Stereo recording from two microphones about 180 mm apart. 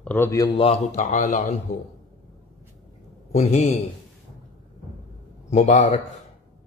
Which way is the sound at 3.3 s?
35° left (ahead or behind).